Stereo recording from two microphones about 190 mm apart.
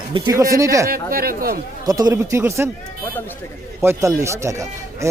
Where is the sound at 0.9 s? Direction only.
50° right (ahead or behind).